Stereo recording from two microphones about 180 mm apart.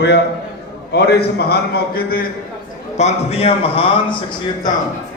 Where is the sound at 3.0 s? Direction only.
35° left (ahead or behind).